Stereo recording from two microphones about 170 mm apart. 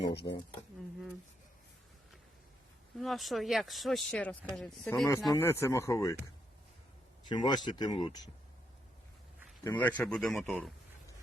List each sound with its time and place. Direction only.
0.1 s speech: 75° left (ahead or behind)
3.0 s speech: centre (ahead or behind)
5.3 s speech: 15° left (ahead or behind)
7.3 s speech: 25° left (ahead or behind)
9.6 s speech: 10° left (ahead or behind)